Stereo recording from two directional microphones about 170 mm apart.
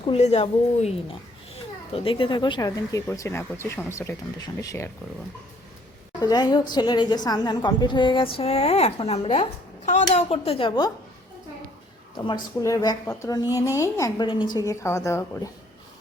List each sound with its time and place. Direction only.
0.0 s a woman's voice: 40° left (ahead or behind); by 4.9 s 15° left (ahead or behind)
6.1 s a woman's voice: 25° left (ahead or behind)
12.2 s a woman's voice: 20° left (ahead or behind)